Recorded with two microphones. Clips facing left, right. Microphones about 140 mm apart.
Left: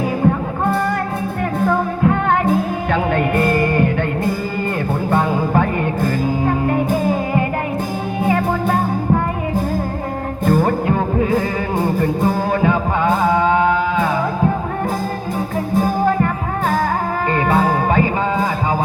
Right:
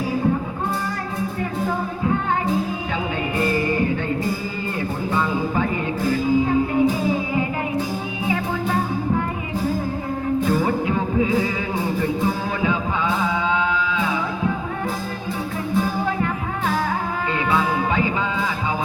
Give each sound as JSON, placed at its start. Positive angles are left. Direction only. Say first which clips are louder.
{"t": 0.3, "sound": "music", "louder": "left 5 dB", "side_deg": 60}
{"t": 5.1, "sound": "music", "louder": "left 6 dB", "side_deg": 55}
{"t": 10.4, "sound": "music", "louder": "left 8 dB", "side_deg": 50}
{"t": 15.7, "sound": "music", "louder": "left 6 dB", "side_deg": 45}